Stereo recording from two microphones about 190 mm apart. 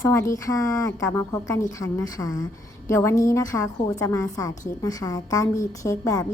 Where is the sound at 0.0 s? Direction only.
15° left (ahead or behind).